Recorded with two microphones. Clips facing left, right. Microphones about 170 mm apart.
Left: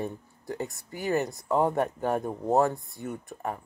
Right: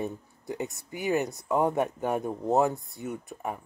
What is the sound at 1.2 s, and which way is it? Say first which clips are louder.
Speech: left 2 dB; centre (ahead or behind).